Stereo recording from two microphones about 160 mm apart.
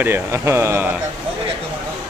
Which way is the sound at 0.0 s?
15° right (ahead or behind).